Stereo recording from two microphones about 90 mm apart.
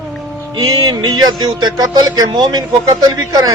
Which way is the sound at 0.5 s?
45° right (ahead or behind).